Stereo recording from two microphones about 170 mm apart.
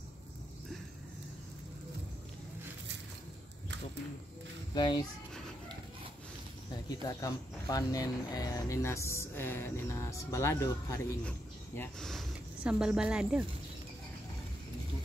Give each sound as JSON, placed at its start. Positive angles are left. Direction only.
{"t": 4.7, "sound": "a child's voice", "side_deg": 25}
{"t": 6.9, "sound": "speech", "side_deg": 20}